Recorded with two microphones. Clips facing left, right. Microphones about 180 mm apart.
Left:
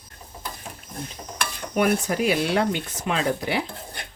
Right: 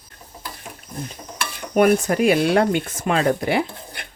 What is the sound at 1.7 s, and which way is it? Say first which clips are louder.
Speech: right 6 dB; 50° right (ahead or behind).